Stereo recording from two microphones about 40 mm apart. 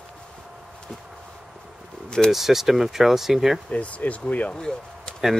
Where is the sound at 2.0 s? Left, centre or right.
Centre.